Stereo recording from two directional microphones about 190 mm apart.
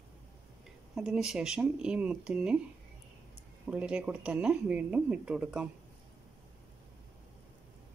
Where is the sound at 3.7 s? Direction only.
5° right (ahead or behind).